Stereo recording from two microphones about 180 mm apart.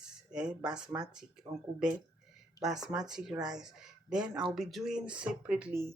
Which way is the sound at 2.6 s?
Centre (ahead or behind).